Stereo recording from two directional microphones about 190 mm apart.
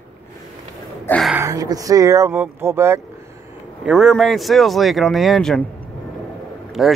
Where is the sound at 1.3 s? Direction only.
15° right (ahead or behind).